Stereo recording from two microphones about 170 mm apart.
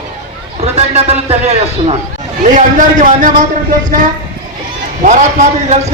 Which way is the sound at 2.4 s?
50° right (ahead or behind).